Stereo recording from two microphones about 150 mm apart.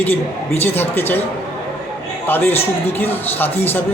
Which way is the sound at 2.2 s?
15° left (ahead or behind).